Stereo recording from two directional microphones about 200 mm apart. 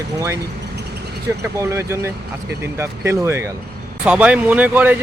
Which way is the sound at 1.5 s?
15° right (ahead or behind).